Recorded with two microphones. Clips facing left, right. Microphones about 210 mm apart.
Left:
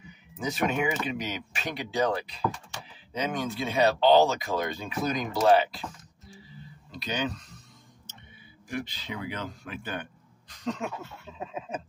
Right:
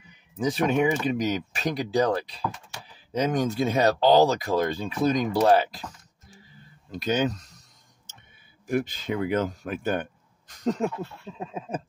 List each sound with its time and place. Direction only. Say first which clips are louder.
0.4 s speech: right 5 dB; 35° right (ahead or behind)
8.6 s speech: right 8 dB; 50° right (ahead or behind)